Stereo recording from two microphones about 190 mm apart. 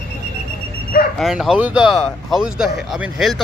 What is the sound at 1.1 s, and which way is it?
A man's voice, centre (ahead or behind).